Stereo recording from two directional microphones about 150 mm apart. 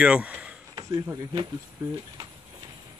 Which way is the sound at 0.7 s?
25° right (ahead or behind).